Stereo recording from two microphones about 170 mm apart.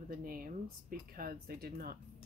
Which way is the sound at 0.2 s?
55° right (ahead or behind).